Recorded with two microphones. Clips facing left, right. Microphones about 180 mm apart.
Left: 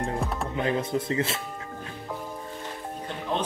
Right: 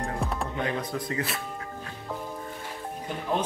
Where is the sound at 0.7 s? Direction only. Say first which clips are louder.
Left 4 dB; 25° left (ahead or behind).